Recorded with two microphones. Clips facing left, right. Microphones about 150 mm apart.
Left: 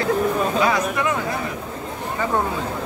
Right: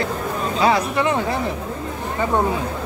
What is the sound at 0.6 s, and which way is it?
Speech, 30° right (ahead or behind).